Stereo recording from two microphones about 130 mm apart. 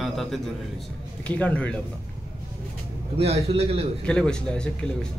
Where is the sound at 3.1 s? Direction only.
50° right (ahead or behind).